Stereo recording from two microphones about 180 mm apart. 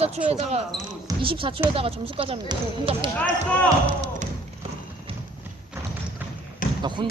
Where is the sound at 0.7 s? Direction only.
25° right (ahead or behind).